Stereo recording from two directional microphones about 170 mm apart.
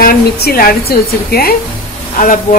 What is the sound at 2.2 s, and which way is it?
Speech, 50° left (ahead or behind).